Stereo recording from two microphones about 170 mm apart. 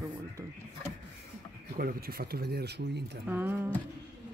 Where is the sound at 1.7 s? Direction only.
60° right (ahead or behind); by 3.0 s 75° right (ahead or behind).